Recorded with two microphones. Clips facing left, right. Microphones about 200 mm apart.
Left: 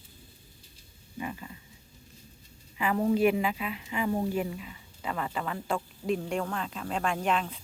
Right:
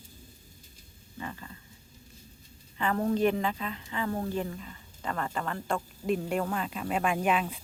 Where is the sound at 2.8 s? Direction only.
5° left (ahead or behind).